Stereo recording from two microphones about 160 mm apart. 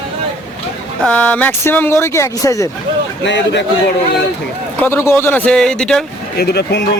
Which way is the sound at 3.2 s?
90° left.